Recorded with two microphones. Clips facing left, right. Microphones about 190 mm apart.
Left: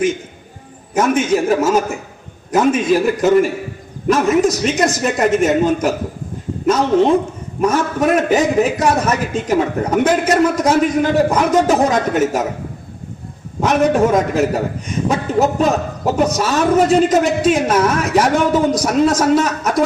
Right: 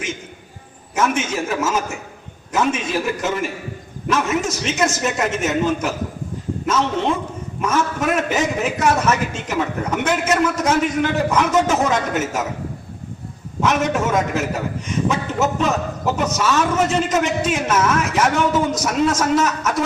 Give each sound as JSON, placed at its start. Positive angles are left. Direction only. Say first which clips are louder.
{"t": 0.9, "sound": "a man's voice", "louder": "left 6 dB", "side_deg": 35}
{"t": 13.6, "sound": "a man's voice", "louder": "left 6 dB", "side_deg": 35}